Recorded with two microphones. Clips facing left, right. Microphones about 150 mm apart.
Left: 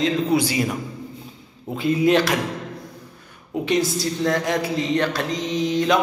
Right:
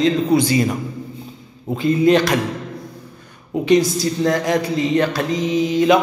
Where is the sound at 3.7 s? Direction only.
Centre (ahead or behind).